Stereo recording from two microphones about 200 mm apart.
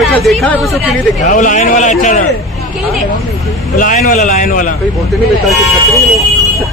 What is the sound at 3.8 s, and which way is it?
Speech, 40° left (ahead or behind).